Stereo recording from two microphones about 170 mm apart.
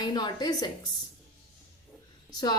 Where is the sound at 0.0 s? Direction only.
25° left (ahead or behind).